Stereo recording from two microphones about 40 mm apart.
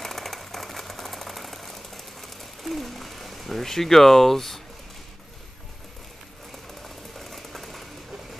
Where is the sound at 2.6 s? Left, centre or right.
Centre.